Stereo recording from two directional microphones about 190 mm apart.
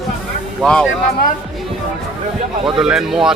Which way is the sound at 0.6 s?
5° left (ahead or behind).